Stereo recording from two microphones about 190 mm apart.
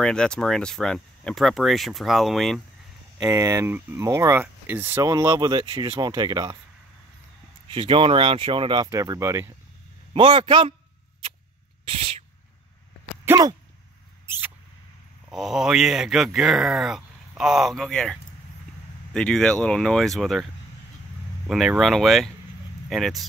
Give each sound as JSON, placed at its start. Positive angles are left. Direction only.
{"t": 0.0, "sound": "speech", "side_deg": 5}
{"t": 3.3, "sound": "speech", "side_deg": -15}
{"t": 7.6, "sound": "speech", "side_deg": -25}
{"t": 10.1, "sound": "speech", "side_deg": -25}
{"t": 11.8, "sound": "owl", "side_deg": -30}
{"t": 13.2, "sound": "a sound", "side_deg": -15}
{"t": 14.2, "sound": "mouse", "side_deg": -10}
{"t": 15.2, "sound": "speech", "side_deg": 0}
{"t": 21.5, "sound": "speech", "side_deg": 0}